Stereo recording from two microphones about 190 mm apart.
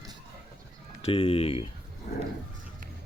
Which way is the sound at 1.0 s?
30° left (ahead or behind).